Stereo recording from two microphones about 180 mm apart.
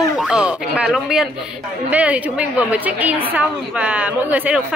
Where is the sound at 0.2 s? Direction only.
5° right (ahead or behind).